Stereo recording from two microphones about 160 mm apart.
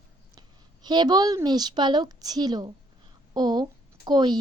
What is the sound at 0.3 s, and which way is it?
A woman's voice, 25° right (ahead or behind).